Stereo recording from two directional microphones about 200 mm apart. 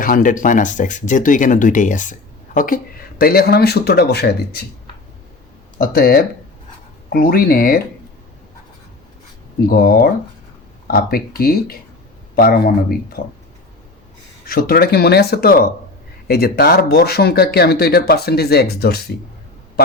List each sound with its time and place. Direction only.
0.0 s speech: 40° left (ahead or behind)
5.8 s speech: 50° left (ahead or behind)
9.6 s speech: 45° left (ahead or behind)
14.4 s speech: 50° left (ahead or behind)